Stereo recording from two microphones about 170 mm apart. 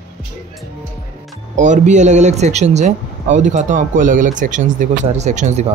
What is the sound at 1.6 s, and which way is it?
Speech, 45° right (ahead or behind).